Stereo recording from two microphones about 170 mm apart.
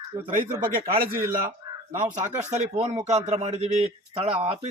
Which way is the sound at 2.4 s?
40° right (ahead or behind).